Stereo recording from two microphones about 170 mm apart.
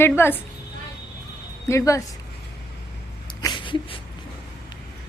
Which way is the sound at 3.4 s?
30° left (ahead or behind).